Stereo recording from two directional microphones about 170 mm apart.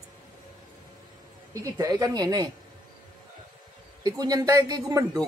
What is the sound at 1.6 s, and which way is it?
Speech, 20° right (ahead or behind).